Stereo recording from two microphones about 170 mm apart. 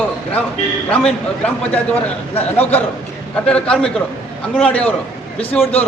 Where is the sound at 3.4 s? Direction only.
5° left (ahead or behind).